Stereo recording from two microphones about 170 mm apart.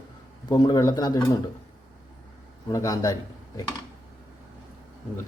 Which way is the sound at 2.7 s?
20° left (ahead or behind).